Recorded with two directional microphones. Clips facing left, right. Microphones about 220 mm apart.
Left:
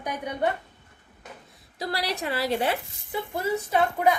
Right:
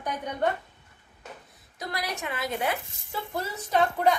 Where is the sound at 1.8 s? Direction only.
30° left (ahead or behind).